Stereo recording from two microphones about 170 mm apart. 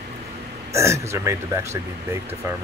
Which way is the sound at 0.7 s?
15° right (ahead or behind).